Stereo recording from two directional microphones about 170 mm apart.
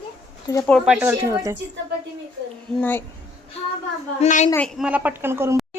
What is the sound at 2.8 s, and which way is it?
Speech, 10° left (ahead or behind).